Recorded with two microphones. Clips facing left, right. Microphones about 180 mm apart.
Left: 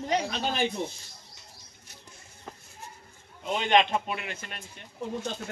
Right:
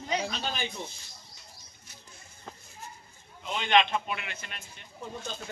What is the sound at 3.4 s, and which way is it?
Speech, 45° left (ahead or behind).